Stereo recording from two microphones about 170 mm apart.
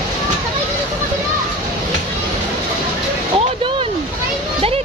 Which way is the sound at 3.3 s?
30° right (ahead or behind).